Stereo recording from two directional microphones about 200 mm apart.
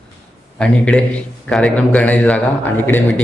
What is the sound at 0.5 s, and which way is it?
A man's voice, 5° left (ahead or behind).